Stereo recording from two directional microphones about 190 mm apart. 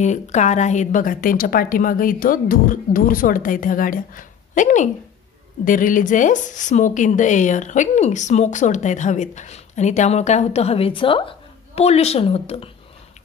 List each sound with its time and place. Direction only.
0.0 s a woman's voice: 40° left (ahead or behind)